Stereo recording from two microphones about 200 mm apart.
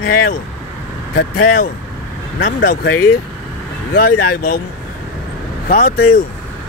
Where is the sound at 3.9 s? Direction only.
45° left (ahead or behind).